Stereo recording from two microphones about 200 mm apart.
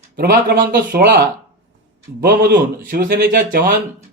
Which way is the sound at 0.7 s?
50° right (ahead or behind).